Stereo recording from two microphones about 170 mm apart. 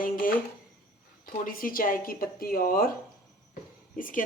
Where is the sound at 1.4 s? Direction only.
55° left (ahead or behind).